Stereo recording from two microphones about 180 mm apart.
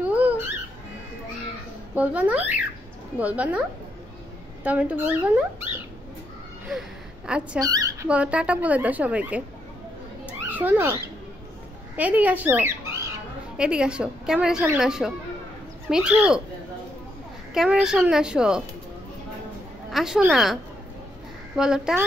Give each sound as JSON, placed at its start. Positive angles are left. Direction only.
{"t": 0.0, "sound": "music", "side_deg": -10}
{"t": 2.0, "sound": "a woman's voice", "side_deg": -10}
{"t": 4.6, "sound": "a woman's voice", "side_deg": -10}
{"t": 7.2, "sound": "a woman's voice", "side_deg": -5}
{"t": 7.6, "sound": "a sound", "side_deg": -20}
{"t": 8.1, "sound": "a woman's voice", "side_deg": -5}
{"t": 10.5, "sound": "speech", "side_deg": -10}
{"t": 12.0, "sound": "a woman's voice", "side_deg": -10}
{"t": 17.6, "sound": "a woman's voice", "side_deg": -5}
{"t": 19.9, "sound": "a woman's voice", "side_deg": 0}
{"t": 21.5, "sound": "a woman's voice", "side_deg": -5}